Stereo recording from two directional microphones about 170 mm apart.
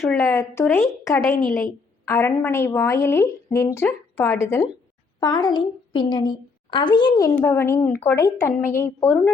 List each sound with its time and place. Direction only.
0.2 s a woman's voice: 15° left (ahead or behind)
7.4 s a woman's voice: 15° left (ahead or behind)